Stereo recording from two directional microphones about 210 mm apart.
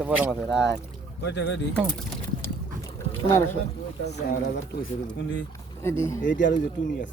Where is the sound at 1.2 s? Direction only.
55° left (ahead or behind).